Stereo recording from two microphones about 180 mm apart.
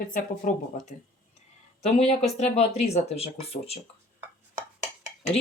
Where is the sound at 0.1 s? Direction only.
45° left (ahead or behind).